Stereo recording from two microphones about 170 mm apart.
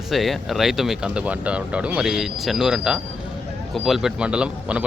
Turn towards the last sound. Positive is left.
turn(degrees=-5)  # may be behind; listen again after turning